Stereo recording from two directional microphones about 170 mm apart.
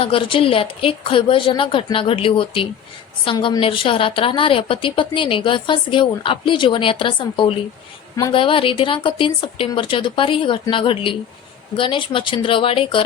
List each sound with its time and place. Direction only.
0.0 s a woman's voice: 30° left (ahead or behind)